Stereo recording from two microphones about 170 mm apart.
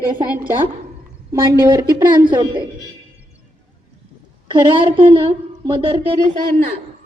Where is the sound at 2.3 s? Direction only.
25° right (ahead or behind).